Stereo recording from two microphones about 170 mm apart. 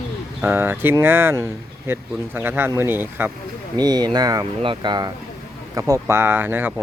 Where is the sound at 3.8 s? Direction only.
25° right (ahead or behind).